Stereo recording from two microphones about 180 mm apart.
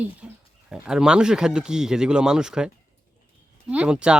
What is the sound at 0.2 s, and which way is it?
Bird, 5° right (ahead or behind).